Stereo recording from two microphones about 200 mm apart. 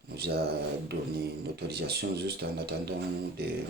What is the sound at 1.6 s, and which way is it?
Speech, 55° right (ahead or behind).